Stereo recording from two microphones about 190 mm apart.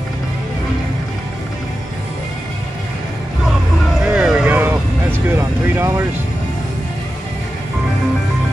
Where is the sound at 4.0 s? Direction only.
5° right (ahead or behind).